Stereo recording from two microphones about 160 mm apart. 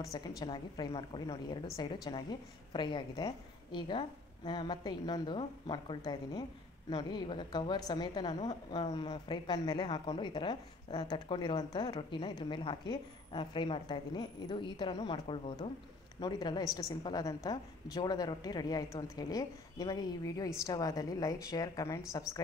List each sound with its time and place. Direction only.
0.0 s a woman's voice: 25° left (ahead or behind)